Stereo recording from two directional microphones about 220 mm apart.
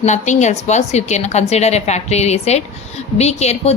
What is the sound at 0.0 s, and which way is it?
A woman's voice, 30° left (ahead or behind).